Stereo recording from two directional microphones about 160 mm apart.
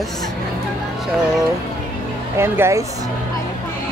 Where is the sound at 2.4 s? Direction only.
15° right (ahead or behind).